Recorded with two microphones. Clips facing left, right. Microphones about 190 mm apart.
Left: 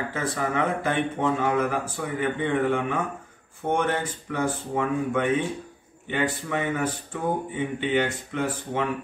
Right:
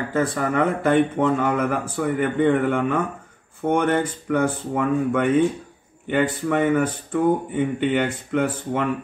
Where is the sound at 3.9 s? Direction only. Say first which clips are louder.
Right 7 dB; 55° right (ahead or behind).